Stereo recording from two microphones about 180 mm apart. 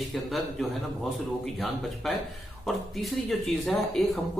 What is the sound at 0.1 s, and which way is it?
Speech, centre (ahead or behind).